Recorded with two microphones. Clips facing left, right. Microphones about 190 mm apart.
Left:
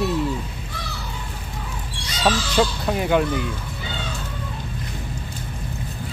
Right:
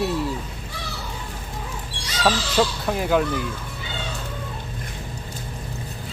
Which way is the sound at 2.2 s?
Centre (ahead or behind).